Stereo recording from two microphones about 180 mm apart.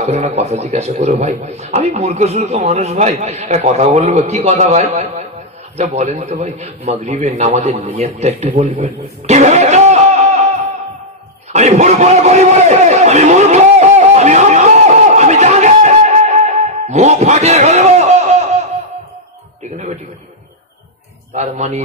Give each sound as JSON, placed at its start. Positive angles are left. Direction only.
{"t": 0.0, "sound": "a man's voice", "side_deg": -35}
{"t": 11.5, "sound": "a sound", "side_deg": -40}
{"t": 21.4, "sound": "a man's voice", "side_deg": -40}